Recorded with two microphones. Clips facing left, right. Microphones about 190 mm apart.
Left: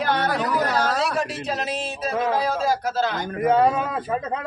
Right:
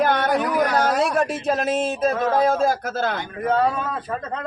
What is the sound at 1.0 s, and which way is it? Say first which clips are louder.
A man's voice: right 4 dB; 50° right (ahead or behind).